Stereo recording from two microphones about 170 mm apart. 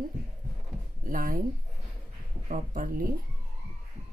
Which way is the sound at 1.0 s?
55° right (ahead or behind).